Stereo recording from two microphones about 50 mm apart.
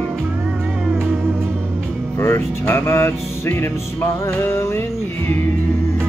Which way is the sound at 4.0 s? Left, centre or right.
Left.